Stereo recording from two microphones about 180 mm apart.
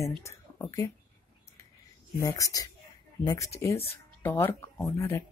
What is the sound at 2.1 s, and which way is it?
Speech, 15° left (ahead or behind).